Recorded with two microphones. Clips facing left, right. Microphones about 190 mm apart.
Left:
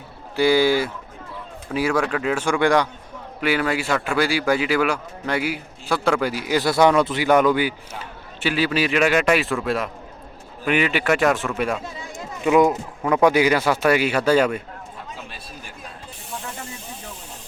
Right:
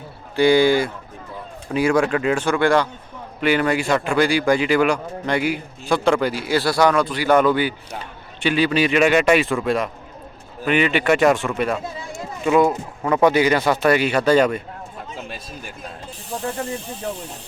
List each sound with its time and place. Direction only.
0.3 s speech: 5° left (ahead or behind); by 7.3 s 20° left (ahead or behind)
7.3 s speech: 10° left (ahead or behind)
12.1 s a sound: 15° left (ahead or behind)
13.0 s speech: 5° left (ahead or behind)
16.3 s speech: 35° right (ahead or behind)